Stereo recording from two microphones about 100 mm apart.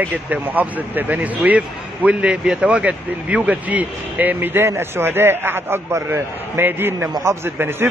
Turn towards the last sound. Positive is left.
turn(degrees=-25)  # may be behind; listen again after turning